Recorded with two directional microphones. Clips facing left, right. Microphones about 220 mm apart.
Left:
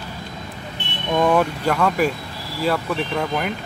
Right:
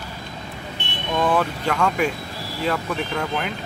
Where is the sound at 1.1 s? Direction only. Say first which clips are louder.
Left 3 dB; 15° left (ahead or behind).